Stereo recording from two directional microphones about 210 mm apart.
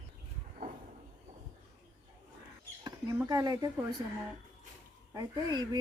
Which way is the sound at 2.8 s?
20° right (ahead or behind).